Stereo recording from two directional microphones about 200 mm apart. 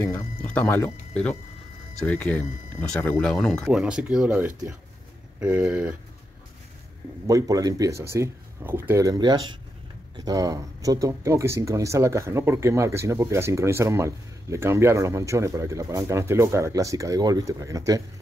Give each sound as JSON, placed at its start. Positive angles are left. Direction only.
{"t": 0.0, "sound": "speech", "side_deg": 10}
{"t": 7.2, "sound": "speech", "side_deg": -15}